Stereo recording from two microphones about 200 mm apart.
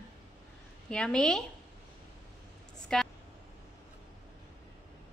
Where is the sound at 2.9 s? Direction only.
5° left (ahead or behind).